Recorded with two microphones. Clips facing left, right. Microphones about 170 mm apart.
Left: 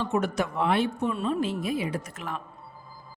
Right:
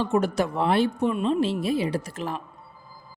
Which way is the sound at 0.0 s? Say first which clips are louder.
Right 4 dB; 35° right (ahead or behind).